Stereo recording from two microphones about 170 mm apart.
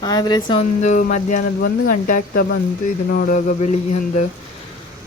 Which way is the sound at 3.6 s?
35° left (ahead or behind).